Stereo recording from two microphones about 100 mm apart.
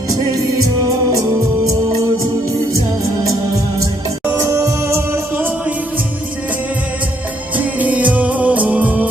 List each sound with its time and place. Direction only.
1.1 s music: 35° right (ahead or behind)
4.3 s music: 30° right (ahead or behind)
7.5 s music: 15° right (ahead or behind)